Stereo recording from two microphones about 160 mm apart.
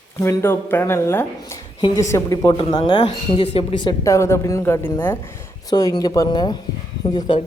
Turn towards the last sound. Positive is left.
turn(degrees=30)  # may be behind; listen again after turning